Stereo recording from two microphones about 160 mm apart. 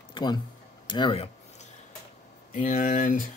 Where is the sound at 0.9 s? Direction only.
30° left (ahead or behind).